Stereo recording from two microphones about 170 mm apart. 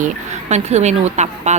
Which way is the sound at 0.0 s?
40° right (ahead or behind).